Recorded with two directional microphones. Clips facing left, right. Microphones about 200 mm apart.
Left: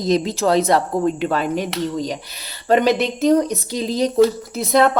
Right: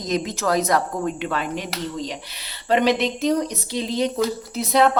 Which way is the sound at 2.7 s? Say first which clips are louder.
Left 3 dB; 45° left (ahead or behind).